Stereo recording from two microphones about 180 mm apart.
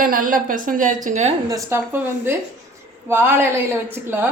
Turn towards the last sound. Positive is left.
turn(degrees=-10)  # may be behind; listen again after turning